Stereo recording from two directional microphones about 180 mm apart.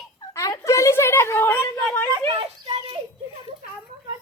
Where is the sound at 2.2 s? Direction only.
30° right (ahead or behind).